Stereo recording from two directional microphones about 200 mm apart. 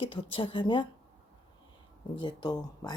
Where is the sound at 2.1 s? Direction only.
25° left (ahead or behind).